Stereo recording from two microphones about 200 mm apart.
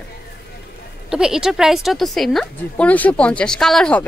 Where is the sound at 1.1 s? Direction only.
5° right (ahead or behind).